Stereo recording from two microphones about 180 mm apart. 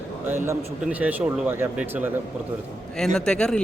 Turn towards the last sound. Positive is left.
turn(degrees=5)  # may be behind; listen again after turning